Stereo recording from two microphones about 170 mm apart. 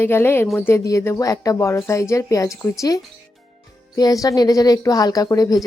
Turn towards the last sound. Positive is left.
turn(degrees=20)  # may be behind; listen again after turning